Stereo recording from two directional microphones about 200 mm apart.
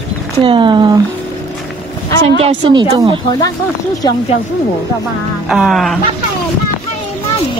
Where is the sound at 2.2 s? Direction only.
30° right (ahead or behind).